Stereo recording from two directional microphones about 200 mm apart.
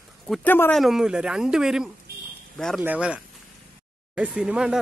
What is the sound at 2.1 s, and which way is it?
Buzzer, 50° right (ahead or behind).